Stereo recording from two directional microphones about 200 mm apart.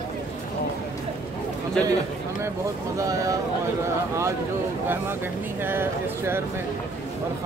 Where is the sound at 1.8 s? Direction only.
5° left (ahead or behind).